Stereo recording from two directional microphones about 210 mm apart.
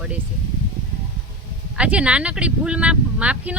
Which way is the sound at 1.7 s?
5° right (ahead or behind).